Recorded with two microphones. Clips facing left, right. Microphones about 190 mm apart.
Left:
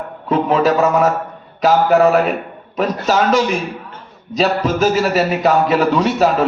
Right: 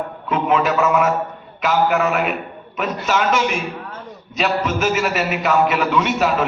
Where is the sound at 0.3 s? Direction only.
35° left (ahead or behind).